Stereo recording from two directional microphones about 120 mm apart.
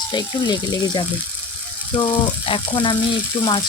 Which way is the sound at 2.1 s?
45° left (ahead or behind).